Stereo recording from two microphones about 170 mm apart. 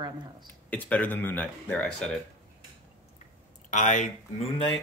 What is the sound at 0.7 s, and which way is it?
Speech, 10° left (ahead or behind).